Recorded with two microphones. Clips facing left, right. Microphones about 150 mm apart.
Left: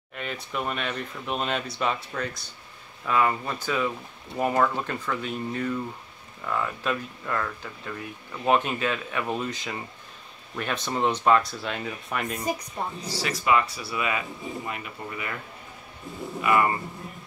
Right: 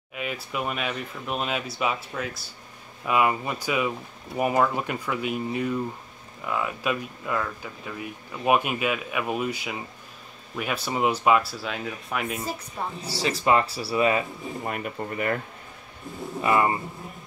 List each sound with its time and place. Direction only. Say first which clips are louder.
0.1 s speech: right 1 dB; 5° right (ahead or behind)
12.4 s speech: left 3 dB; 15° left (ahead or behind)
13.2 s speech: right 2 dB; 30° right (ahead or behind); by 15.3 s 50° right (ahead or behind)
16.3 s speech: right 1 dB; 25° right (ahead or behind)